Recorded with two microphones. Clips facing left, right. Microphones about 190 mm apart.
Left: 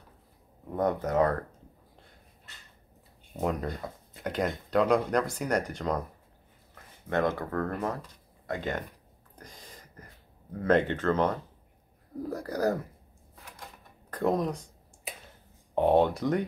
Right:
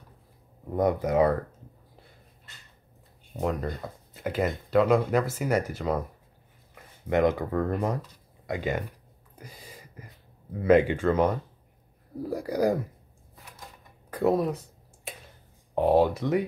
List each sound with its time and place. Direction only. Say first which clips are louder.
0.7 s speech: right 3 dB; 10° right (ahead or behind)
3.3 s speech: right 1 dB; centre (ahead or behind)
9.3 s a sound: right 3 dB; 10° right (ahead or behind)
10.6 s speech: right 4 dB; 10° right (ahead or behind)
14.1 s computer keyboard: right 3 dB; 5° right (ahead or behind)
15.7 s speech: right 1 dB; centre (ahead or behind)